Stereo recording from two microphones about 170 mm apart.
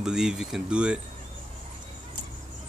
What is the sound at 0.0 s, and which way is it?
Speech, 5° right (ahead or behind).